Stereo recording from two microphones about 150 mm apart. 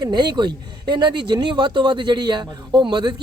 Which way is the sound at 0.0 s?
30° right (ahead or behind).